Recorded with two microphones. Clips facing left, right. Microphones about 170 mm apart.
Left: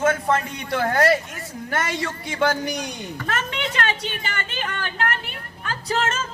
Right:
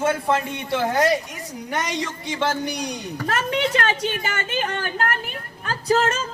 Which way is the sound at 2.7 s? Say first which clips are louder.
Right 2 dB; 35° right (ahead or behind).